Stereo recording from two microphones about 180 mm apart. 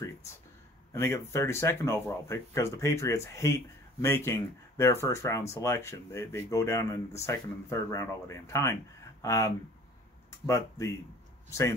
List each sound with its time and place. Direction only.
0.9 s speech: 15° left (ahead or behind)